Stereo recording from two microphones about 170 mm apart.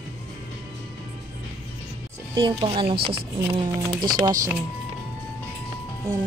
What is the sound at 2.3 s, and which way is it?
Speech, 30° right (ahead or behind).